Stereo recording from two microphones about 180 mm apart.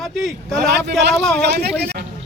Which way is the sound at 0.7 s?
70° right (ahead or behind).